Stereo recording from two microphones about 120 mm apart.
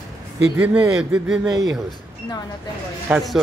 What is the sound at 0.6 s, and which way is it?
Speech, 10° right (ahead or behind).